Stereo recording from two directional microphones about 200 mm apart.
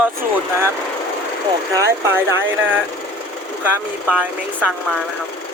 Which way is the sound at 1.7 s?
15° right (ahead or behind).